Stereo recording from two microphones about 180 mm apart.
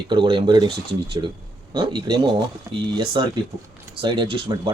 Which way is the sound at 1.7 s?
25° right (ahead or behind).